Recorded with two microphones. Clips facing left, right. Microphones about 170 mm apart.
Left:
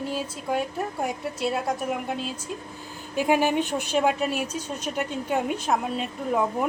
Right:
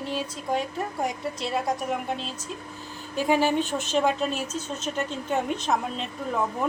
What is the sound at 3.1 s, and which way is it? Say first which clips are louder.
A woman's voice: left 1 dB; 15° left (ahead or behind).